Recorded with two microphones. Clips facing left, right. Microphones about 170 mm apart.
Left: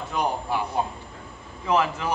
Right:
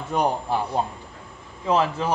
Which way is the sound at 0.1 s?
35° right (ahead or behind).